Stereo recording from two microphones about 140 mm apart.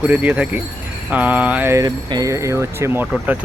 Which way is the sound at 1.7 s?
25° right (ahead or behind).